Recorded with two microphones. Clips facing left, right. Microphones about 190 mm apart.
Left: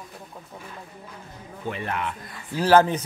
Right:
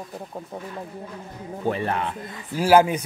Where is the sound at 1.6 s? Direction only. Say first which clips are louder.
Right 5 dB; 35° right (ahead or behind).